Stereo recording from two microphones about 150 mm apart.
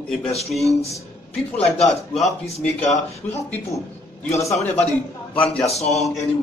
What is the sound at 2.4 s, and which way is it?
Speech, 45° left (ahead or behind).